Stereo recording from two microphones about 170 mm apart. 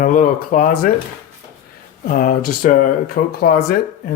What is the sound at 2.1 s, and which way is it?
Speech, 55° left (ahead or behind).